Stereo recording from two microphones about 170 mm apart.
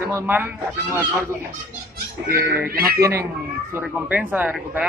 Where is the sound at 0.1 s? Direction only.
15° right (ahead or behind).